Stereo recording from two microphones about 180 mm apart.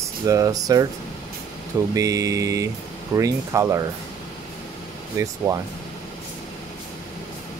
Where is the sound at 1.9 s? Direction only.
20° right (ahead or behind).